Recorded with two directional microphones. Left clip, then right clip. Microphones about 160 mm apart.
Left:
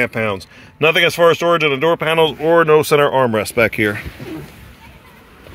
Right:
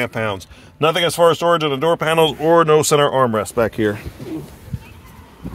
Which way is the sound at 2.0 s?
25° right (ahead or behind).